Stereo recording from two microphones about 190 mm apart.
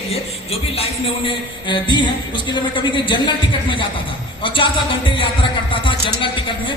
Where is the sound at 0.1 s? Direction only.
30° left (ahead or behind).